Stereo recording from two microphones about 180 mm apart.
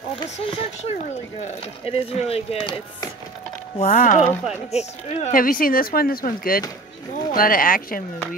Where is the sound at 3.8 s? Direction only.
45° left (ahead or behind).